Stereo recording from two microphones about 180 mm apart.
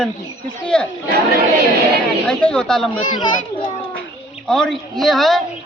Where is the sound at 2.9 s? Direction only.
25° left (ahead or behind).